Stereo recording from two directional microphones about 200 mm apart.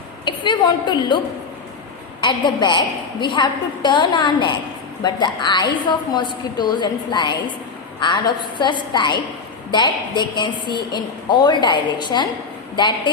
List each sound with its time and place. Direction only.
0.3 s a woman's voice: 20° left (ahead or behind)
2.2 s a woman's voice: 20° left (ahead or behind)